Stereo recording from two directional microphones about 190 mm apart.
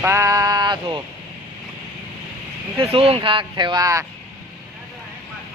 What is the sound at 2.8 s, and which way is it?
Speech, 30° right (ahead or behind).